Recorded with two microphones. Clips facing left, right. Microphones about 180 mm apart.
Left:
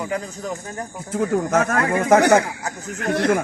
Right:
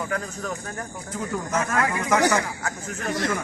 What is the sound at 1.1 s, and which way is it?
Speech, 65° left (ahead or behind).